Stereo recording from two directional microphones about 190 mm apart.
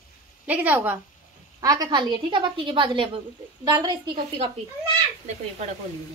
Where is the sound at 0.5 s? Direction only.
10° right (ahead or behind).